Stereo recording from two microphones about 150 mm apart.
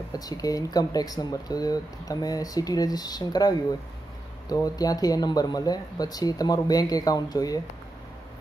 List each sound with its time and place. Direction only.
0.1 s speech: 25° left (ahead or behind)